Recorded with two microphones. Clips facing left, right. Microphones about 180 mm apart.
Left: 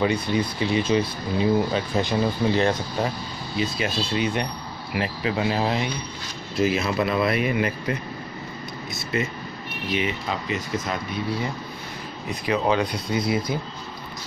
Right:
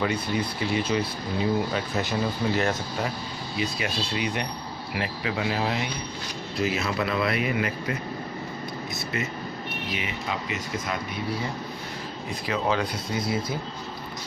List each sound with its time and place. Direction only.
0.0 s speech: 25° left (ahead or behind)
6.6 s speech: 20° left (ahead or behind)
12.4 s speech: 20° left (ahead or behind)